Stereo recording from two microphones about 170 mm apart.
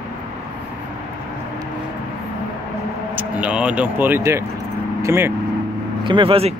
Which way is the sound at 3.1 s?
10° right (ahead or behind).